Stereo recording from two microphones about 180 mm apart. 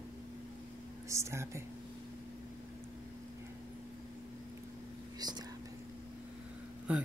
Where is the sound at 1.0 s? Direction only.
15° right (ahead or behind).